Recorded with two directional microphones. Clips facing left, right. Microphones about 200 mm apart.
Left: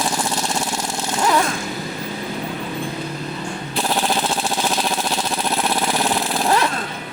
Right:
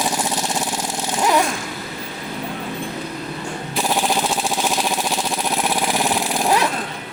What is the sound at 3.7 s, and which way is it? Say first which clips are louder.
Vehicle: right 1 dB; 10° right (ahead or behind).